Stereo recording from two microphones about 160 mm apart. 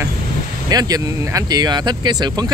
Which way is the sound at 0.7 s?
25° right (ahead or behind).